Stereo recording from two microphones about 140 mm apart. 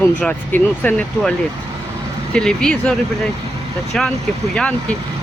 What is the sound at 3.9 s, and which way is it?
Speech, 5° left (ahead or behind).